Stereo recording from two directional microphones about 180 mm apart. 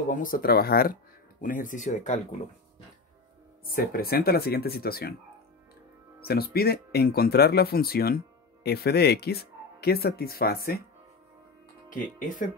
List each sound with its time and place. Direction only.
0.1 s speech: 50° left (ahead or behind)
3.7 s speech: 55° left (ahead or behind)
6.2 s speech: 60° left (ahead or behind)